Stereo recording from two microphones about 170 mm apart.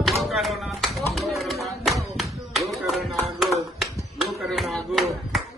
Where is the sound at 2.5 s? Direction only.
Centre (ahead or behind).